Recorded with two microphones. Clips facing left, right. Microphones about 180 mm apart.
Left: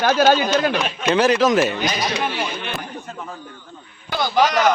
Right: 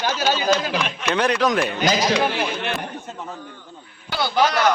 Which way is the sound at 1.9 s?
90° right.